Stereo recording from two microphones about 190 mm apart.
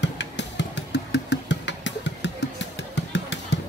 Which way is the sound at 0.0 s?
65° left (ahead or behind).